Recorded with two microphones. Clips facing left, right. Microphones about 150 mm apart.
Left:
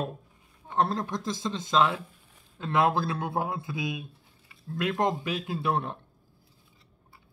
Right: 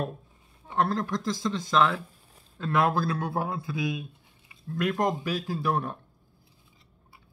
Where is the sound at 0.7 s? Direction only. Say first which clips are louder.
Right 1 dB; 20° left (ahead or behind).